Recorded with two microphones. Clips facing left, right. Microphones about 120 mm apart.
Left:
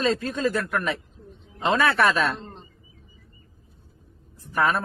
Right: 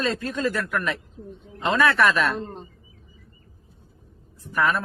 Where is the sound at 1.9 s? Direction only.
30° left (ahead or behind).